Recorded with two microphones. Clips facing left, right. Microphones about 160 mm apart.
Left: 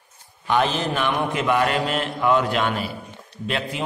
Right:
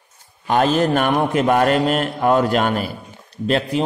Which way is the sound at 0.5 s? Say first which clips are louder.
Right 5 dB; 40° right (ahead or behind).